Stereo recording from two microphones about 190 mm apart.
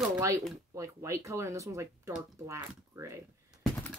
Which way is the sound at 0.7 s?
15° right (ahead or behind).